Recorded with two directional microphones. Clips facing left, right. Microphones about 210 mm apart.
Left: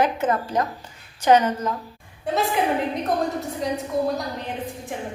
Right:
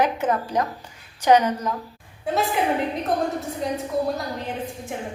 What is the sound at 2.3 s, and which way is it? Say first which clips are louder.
Speech: even; centre (ahead or behind).